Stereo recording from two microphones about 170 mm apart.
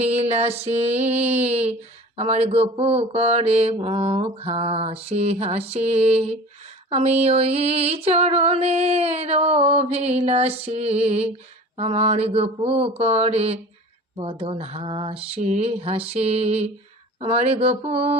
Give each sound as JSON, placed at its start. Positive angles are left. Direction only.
{"t": 0.0, "sound": "music", "side_deg": -40}